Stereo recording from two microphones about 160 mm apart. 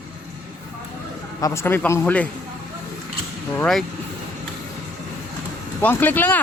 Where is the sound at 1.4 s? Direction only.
15° left (ahead or behind).